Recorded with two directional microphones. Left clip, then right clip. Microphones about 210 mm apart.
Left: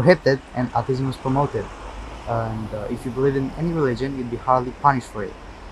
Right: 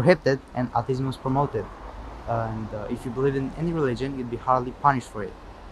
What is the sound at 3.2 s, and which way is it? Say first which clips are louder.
Speech: left 4 dB; centre (ahead or behind).